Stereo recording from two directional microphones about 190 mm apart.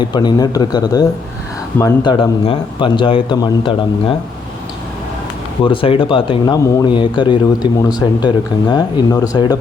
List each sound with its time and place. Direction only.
0.0 s speech: 25° left (ahead or behind)
5.6 s speech: 30° left (ahead or behind)